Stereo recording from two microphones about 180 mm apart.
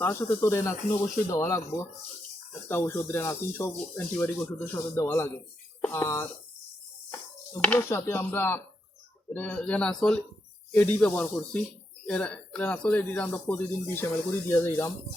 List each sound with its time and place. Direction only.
0.0 s speech: 15° left (ahead or behind)